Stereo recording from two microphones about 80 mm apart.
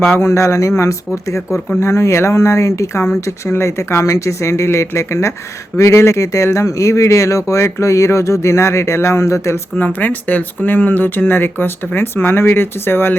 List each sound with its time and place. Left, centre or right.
0.1 s speech: left
9.7 s speech: left